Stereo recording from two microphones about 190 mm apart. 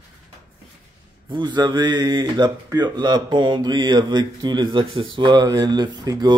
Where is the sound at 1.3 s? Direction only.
25° right (ahead or behind).